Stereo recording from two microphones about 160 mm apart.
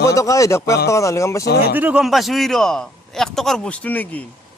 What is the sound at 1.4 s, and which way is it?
Speech, 90° left.